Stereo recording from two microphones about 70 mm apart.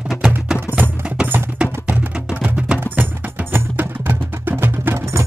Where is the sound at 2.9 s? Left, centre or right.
Right.